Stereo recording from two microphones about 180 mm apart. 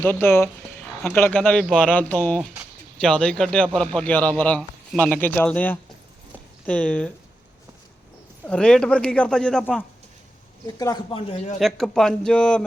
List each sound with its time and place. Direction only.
0.0 s a man's voice: 10° left (ahead or behind)
8.4 s speech: 5° left (ahead or behind)
10.8 s a man's voice: 20° left (ahead or behind)
11.6 s speech: centre (ahead or behind)